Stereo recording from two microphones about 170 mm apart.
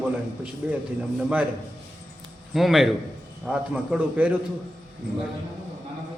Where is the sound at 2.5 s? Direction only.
Centre (ahead or behind).